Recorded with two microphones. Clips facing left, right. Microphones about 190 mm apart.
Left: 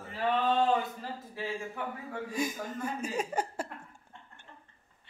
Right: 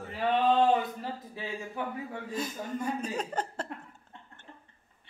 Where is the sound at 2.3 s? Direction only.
10° left (ahead or behind).